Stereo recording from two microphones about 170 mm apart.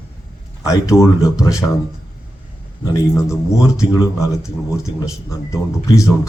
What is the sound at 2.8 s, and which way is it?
Speech, 20° left (ahead or behind).